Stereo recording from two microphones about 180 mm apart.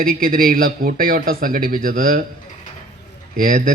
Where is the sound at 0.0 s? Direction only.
55° right (ahead or behind).